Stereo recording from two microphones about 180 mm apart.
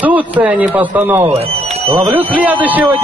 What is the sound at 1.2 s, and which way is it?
Speech, 35° right (ahead or behind).